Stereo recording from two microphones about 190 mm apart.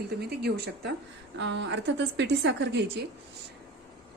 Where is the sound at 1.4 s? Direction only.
70° right (ahead or behind).